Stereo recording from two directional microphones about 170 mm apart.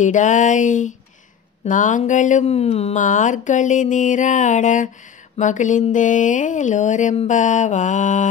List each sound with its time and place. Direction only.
0.0 s speech: 45° left (ahead or behind)